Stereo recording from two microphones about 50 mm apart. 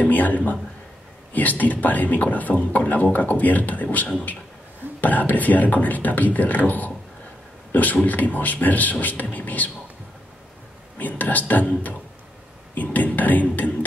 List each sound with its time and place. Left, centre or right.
0.0 s a man's voice: left
11.0 s speech: left